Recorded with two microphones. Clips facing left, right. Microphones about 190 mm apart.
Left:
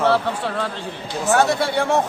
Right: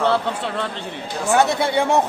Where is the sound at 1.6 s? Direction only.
20° right (ahead or behind).